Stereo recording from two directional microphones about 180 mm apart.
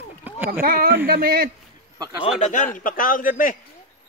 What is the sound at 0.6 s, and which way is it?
Speech, 55° right (ahead or behind).